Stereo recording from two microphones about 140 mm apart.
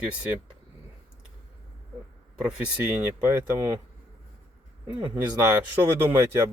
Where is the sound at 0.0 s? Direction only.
10° right (ahead or behind).